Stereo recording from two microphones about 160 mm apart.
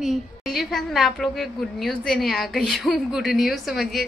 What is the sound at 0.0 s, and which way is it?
A woman's voice, centre (ahead or behind).